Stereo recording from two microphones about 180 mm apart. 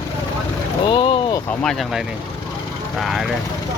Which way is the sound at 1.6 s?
Centre (ahead or behind).